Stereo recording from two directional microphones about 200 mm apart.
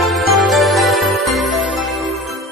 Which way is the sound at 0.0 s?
Centre (ahead or behind).